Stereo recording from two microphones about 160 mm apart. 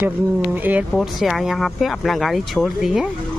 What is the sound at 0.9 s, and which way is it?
Speech, centre (ahead or behind).